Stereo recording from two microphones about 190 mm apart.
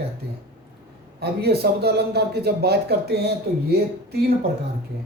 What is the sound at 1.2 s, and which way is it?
Speech, 55° right (ahead or behind).